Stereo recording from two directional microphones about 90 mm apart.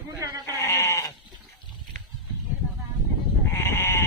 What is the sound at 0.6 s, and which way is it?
Goat, 30° left (ahead or behind).